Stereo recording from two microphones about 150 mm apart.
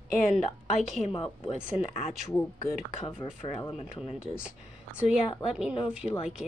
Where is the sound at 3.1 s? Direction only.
35° left (ahead or behind).